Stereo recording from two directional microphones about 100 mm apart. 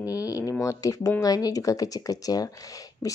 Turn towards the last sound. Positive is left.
turn(degrees=35)  # may be behind; listen again after turning